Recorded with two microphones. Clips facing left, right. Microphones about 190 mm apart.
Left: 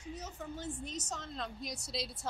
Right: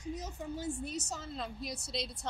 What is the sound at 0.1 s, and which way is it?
A woman's voice, 15° right (ahead or behind).